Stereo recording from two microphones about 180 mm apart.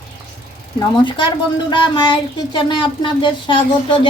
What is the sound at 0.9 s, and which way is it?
Speech, 25° left (ahead or behind).